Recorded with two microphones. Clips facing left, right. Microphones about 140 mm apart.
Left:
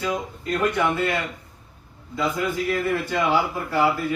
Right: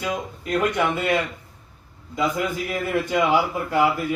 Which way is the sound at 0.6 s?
20° right (ahead or behind).